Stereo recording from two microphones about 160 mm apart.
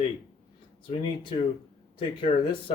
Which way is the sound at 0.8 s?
30° left (ahead or behind).